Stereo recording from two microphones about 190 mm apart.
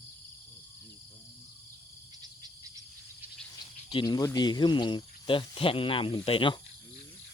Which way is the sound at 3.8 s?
25° left (ahead or behind).